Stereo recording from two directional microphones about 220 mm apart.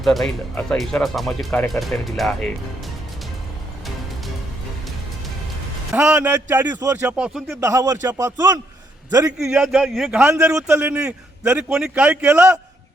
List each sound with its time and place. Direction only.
0.0 s a man's voice: centre (ahead or behind)
5.9 s a man's voice: 5° right (ahead or behind)
7.7 s a man's voice: 15° right (ahead or behind)
9.4 s a man's voice: 5° right (ahead or behind)